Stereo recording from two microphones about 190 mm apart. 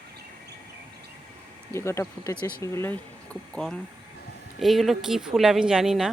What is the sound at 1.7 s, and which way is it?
A woman's voice, 15° left (ahead or behind).